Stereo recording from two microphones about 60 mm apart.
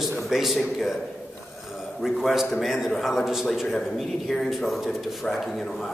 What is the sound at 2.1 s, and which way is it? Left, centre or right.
Speech, centre.